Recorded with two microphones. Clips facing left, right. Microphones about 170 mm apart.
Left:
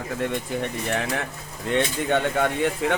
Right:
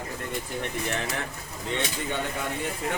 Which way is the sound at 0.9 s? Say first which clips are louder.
Left 4 dB; 60° left (ahead or behind).